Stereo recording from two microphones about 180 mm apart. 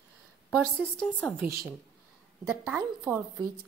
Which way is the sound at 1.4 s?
15° right (ahead or behind).